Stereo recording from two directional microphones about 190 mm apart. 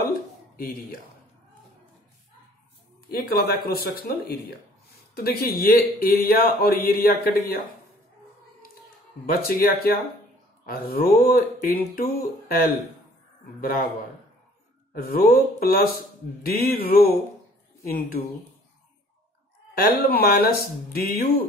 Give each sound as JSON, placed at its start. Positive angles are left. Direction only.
{"t": 3.2, "sound": "a man's voice", "side_deg": 50}
{"t": 9.3, "sound": "a man's voice", "side_deg": 50}
{"t": 15.0, "sound": "a man's voice", "side_deg": 50}
{"t": 20.0, "sound": "a man's voice", "side_deg": 55}